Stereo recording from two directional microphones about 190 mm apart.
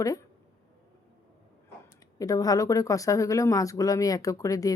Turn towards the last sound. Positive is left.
turn(degrees=15)  # may be behind; listen again after turning